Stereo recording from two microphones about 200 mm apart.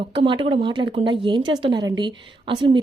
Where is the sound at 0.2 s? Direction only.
25° right (ahead or behind).